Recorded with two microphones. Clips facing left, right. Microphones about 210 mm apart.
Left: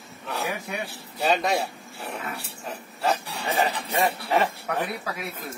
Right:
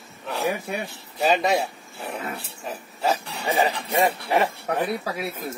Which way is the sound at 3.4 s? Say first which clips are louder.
Right 3 dB; 15° right (ahead or behind).